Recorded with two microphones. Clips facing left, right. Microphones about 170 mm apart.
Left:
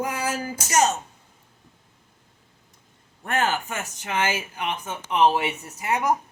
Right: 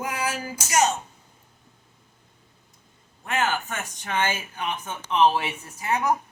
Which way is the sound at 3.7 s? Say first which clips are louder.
Left 1 dB; 5° left (ahead or behind).